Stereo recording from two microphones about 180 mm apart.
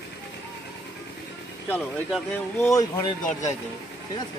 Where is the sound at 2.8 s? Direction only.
20° left (ahead or behind).